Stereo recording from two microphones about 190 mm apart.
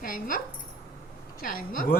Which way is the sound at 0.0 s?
50° left (ahead or behind).